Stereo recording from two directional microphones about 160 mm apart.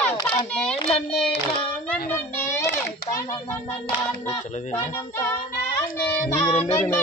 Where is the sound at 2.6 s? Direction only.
15° left (ahead or behind).